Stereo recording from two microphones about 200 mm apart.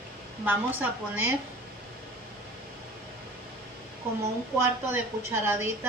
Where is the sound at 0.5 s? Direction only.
10° right (ahead or behind).